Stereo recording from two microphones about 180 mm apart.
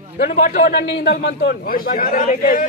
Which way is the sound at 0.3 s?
45° left (ahead or behind).